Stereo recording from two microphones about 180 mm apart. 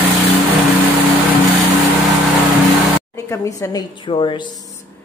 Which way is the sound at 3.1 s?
20° left (ahead or behind).